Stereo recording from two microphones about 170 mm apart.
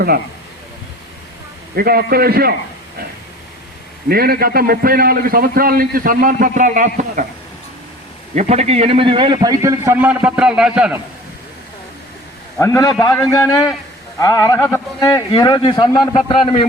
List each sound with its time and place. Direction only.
1.7 s a man's voice: 65° right (ahead or behind)
4.1 s a man's voice: 65° right (ahead or behind)
8.4 s a man's voice: 40° right (ahead or behind); by 11.0 s 5° right (ahead or behind)
12.5 s a man's voice: 15° left (ahead or behind)